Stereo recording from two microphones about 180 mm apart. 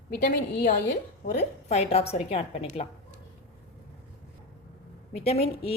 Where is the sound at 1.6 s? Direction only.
35° left (ahead or behind).